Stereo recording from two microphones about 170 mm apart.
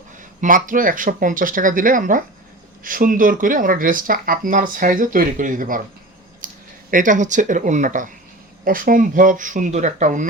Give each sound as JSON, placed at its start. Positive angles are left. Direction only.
{"t": 0.2, "sound": "speech", "side_deg": -50}
{"t": 6.4, "sound": "a sound", "side_deg": -55}
{"t": 6.9, "sound": "speech", "side_deg": -50}